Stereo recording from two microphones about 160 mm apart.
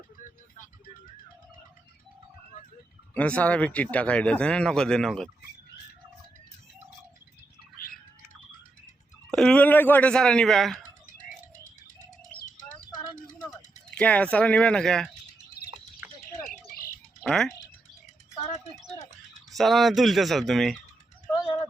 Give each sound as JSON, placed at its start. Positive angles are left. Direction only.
{"t": 0.2, "sound": "music", "side_deg": 50}
{"t": 3.2, "sound": "speech", "side_deg": 10}
{"t": 9.3, "sound": "speech", "side_deg": 5}
{"t": 11.2, "sound": "bird", "side_deg": 55}
{"t": 14.0, "sound": "speech", "side_deg": 10}
{"t": 16.0, "sound": "bird", "side_deg": -10}
{"t": 17.2, "sound": "speech", "side_deg": 5}
{"t": 19.5, "sound": "speech", "side_deg": 0}